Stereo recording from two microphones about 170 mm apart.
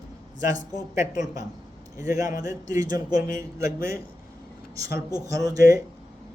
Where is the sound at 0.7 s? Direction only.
20° right (ahead or behind).